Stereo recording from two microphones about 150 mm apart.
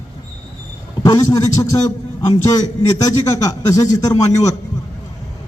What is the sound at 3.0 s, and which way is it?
A man's voice, 25° left (ahead or behind).